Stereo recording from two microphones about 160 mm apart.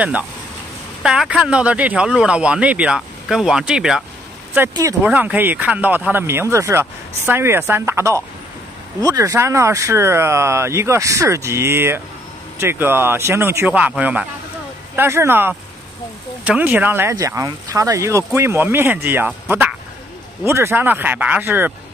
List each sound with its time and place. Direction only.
1.0 s speech: 5° right (ahead or behind)
5.0 s speech: 10° right (ahead or behind)